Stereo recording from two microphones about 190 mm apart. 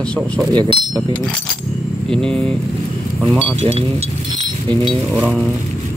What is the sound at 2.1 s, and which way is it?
Speech, 5° left (ahead or behind).